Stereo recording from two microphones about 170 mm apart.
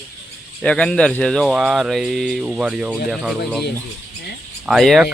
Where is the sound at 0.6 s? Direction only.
5° left (ahead or behind).